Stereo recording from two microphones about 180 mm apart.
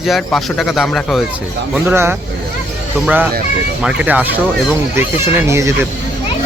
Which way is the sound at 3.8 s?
10° right (ahead or behind).